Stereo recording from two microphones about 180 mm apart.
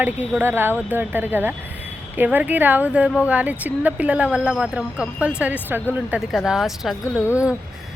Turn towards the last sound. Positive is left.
turn(degrees=15)  # may be behind; listen again after turning